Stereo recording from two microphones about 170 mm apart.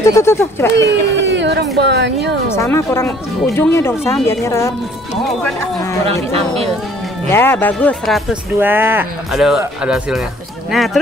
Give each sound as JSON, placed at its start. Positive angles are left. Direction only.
{"t": 0.0, "sound": "speech", "side_deg": 15}
{"t": 0.7, "sound": "speech", "side_deg": -90}
{"t": 2.5, "sound": "speech", "side_deg": 15}
{"t": 6.0, "sound": "speech", "side_deg": -35}
{"t": 7.2, "sound": "speech", "side_deg": 15}
{"t": 8.5, "sound": "speech", "side_deg": -10}